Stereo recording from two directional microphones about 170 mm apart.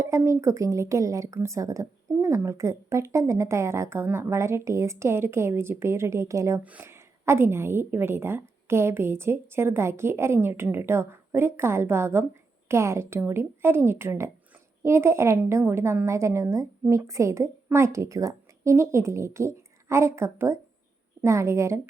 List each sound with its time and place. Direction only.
0.0 s a woman's voice: 15° right (ahead or behind)